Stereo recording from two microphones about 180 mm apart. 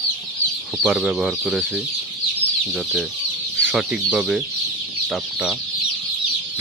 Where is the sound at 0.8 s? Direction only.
Centre (ahead or behind).